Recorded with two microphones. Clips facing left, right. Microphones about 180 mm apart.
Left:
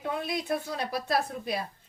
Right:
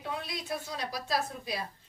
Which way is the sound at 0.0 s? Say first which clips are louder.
Left 6 dB; 55° left (ahead or behind).